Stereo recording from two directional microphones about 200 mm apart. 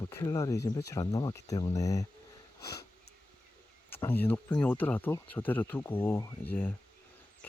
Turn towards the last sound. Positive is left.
turn(degrees=10)  # may be behind; listen again after turning